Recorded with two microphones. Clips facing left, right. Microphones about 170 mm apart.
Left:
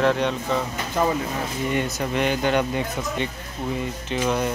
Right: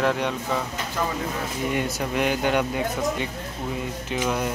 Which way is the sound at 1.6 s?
10° right (ahead or behind).